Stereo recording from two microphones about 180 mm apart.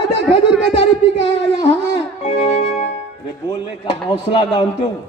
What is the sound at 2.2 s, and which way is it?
Music, 40° left (ahead or behind).